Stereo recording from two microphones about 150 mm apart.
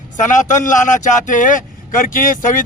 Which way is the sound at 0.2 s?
55° left (ahead or behind).